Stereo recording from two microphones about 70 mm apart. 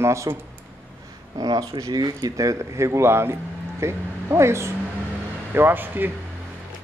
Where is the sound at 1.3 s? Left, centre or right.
Right.